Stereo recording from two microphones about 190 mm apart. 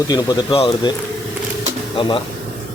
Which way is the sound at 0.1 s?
20° left (ahead or behind).